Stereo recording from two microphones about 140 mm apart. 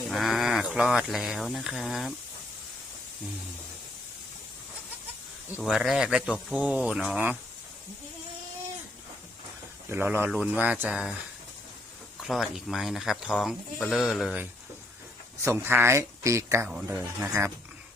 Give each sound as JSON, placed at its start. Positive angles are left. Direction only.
{"t": 0.1, "sound": "speech", "side_deg": 0}
{"t": 5.5, "sound": "speech", "side_deg": -5}
{"t": 9.9, "sound": "speech", "side_deg": -15}
{"t": 12.2, "sound": "speech", "side_deg": 0}
{"t": 15.4, "sound": "speech", "side_deg": -20}